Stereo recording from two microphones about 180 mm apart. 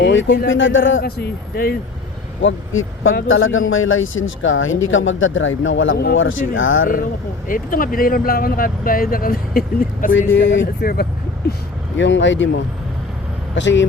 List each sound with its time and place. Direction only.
0.1 s speech: 90° left; by 1.7 s 60° left (ahead or behind)
2.4 s speech: 90° left
6.5 s speech: 90° left
7.4 s speech: 50° left (ahead or behind)
10.4 s speech: 85° left; by 11.0 s 60° left (ahead or behind)
11.9 s speech: 90° left